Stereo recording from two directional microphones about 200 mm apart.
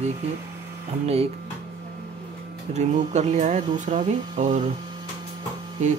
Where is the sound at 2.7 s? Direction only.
35° right (ahead or behind).